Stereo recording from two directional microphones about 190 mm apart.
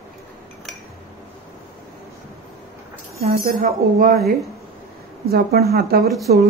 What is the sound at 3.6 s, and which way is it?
Speech, 45° right (ahead or behind).